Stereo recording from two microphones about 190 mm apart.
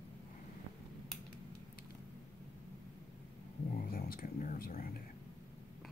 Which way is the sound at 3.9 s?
50° left (ahead or behind).